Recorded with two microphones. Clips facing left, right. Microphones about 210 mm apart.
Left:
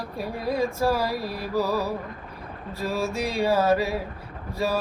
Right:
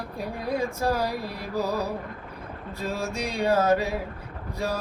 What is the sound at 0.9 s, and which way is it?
Mantra, 20° right (ahead or behind).